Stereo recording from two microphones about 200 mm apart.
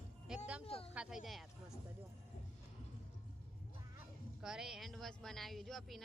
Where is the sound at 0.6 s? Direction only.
30° left (ahead or behind).